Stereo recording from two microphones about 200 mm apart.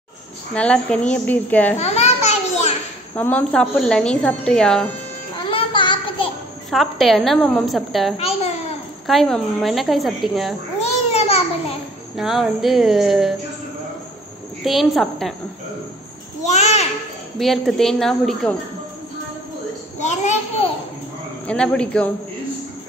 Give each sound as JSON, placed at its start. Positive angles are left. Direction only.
{"t": 0.6, "sound": "a woman's voice", "side_deg": 5}
{"t": 1.8, "sound": "a sound", "side_deg": 35}
{"t": 3.2, "sound": "speech", "side_deg": 10}
{"t": 5.5, "sound": "a sound", "side_deg": 25}
{"t": 6.7, "sound": "speech", "side_deg": 0}
{"t": 8.2, "sound": "babbling", "side_deg": 30}
{"t": 9.0, "sound": "speech", "side_deg": 0}
{"t": 10.8, "sound": "babbling", "side_deg": 30}
{"t": 12.2, "sound": "speech", "side_deg": 0}
{"t": 14.6, "sound": "speech", "side_deg": 0}
{"t": 16.4, "sound": "a sound", "side_deg": 35}
{"t": 17.4, "sound": "speech", "side_deg": 0}
{"t": 20.0, "sound": "a child's voice", "side_deg": 35}
{"t": 21.5, "sound": "speech", "side_deg": 5}